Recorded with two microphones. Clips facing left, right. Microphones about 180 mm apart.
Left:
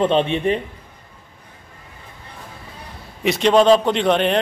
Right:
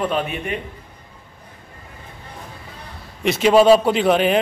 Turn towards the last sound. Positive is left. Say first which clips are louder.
# right 1 dB
turn(degrees=-5)  # may be behind; listen again after turning